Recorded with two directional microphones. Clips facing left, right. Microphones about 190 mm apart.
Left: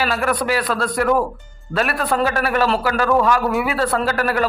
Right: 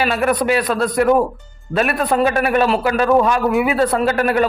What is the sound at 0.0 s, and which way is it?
A man's voice, 20° right (ahead or behind).